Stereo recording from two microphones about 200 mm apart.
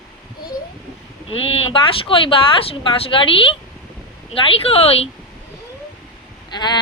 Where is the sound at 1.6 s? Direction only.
25° left (ahead or behind).